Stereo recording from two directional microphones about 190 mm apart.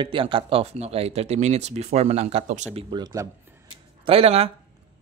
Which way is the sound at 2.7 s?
25° right (ahead or behind).